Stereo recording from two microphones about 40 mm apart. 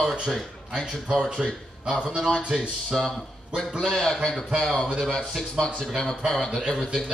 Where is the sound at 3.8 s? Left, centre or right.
Centre.